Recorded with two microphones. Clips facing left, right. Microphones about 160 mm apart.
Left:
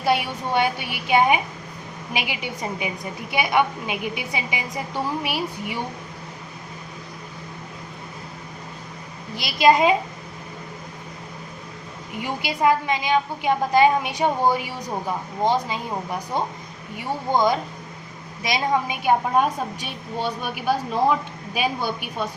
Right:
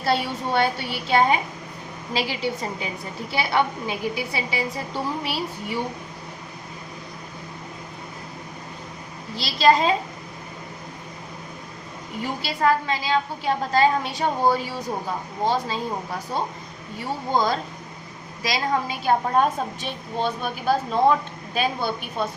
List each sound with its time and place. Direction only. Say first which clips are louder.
0.0 s a woman's voice: left 1 dB; 15° left (ahead or behind)
9.3 s a woman's voice: left 1 dB; 15° left (ahead or behind)
12.2 s a woman's voice: left 1 dB; 15° left (ahead or behind)